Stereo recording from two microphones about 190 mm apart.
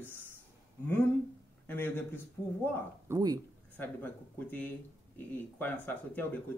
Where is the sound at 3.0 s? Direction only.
20° right (ahead or behind).